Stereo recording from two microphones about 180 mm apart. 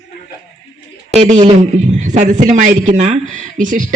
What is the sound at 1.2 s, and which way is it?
A man's voice, 40° right (ahead or behind).